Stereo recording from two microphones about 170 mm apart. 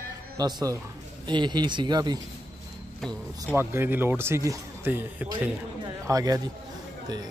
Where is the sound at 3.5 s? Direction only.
15° right (ahead or behind).